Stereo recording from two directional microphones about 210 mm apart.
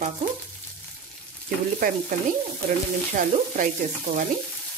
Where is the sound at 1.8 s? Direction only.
40° right (ahead or behind).